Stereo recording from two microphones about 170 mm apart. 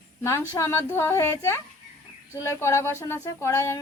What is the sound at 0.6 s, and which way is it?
Speech, 15° left (ahead or behind).